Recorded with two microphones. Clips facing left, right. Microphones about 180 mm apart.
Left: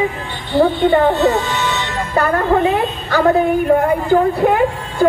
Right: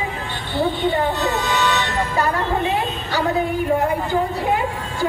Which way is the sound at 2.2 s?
55° left (ahead or behind).